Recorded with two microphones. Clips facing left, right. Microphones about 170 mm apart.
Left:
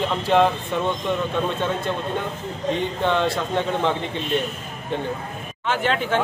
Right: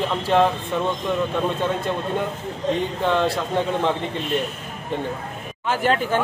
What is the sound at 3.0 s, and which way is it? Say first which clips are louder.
Speech: even; 5° right (ahead or behind).